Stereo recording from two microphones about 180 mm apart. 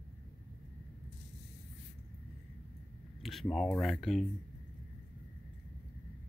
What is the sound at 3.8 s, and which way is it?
Speech, centre (ahead or behind).